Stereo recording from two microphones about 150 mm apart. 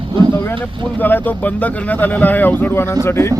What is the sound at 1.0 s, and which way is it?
Speech, 10° left (ahead or behind).